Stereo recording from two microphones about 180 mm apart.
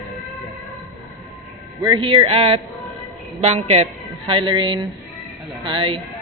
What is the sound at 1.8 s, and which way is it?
A woman's voice, 25° right (ahead or behind).